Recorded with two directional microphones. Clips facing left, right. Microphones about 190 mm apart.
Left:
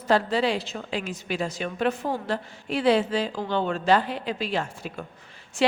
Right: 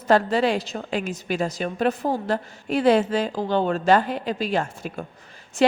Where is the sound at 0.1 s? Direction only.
50° right (ahead or behind).